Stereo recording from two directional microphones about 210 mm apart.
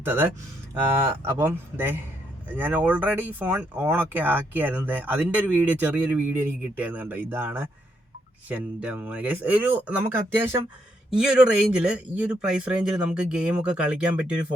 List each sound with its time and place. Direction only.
0.0 s speech: 10° right (ahead or behind)
11.1 s speech: 5° right (ahead or behind)